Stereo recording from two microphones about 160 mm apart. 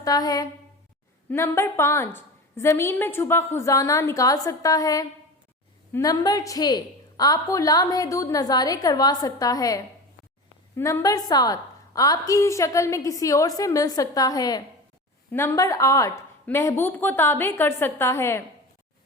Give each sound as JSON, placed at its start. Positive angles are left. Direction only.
{"t": 0.0, "sound": "a woman's voice", "side_deg": 25}